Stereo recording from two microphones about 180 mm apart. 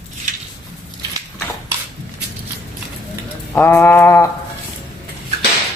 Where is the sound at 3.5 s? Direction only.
10° left (ahead or behind).